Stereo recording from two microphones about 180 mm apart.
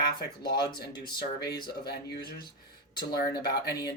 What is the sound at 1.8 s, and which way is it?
Speech, 60° left (ahead or behind).